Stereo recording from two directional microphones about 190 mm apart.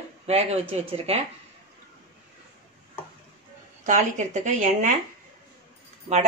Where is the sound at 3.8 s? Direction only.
40° right (ahead or behind).